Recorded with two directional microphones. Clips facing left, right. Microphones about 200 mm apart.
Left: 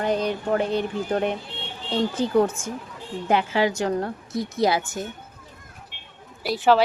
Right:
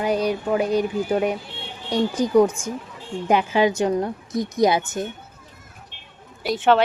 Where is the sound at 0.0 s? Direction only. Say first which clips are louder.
Right 2 dB; 10° right (ahead or behind).